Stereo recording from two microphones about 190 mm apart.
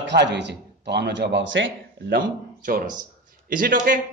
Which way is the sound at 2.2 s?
45° right (ahead or behind).